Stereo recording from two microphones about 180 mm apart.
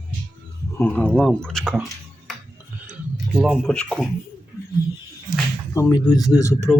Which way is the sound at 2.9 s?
Centre (ahead or behind).